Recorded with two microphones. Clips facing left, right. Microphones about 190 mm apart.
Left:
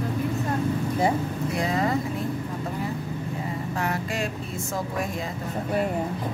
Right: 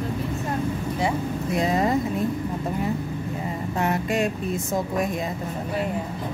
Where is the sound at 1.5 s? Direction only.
20° right (ahead or behind).